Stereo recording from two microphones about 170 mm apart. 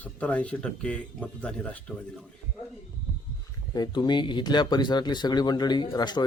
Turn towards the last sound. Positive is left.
turn(degrees=25)  # may be behind; listen again after turning